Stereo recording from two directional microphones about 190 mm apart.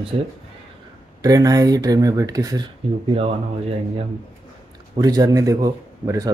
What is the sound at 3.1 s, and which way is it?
Speech, 30° right (ahead or behind).